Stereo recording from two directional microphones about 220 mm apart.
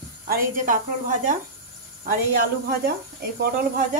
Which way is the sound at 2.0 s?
40° right (ahead or behind).